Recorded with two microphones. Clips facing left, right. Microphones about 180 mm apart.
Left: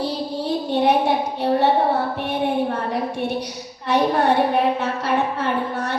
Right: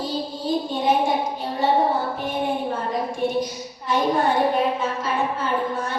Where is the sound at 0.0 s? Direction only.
70° left (ahead or behind).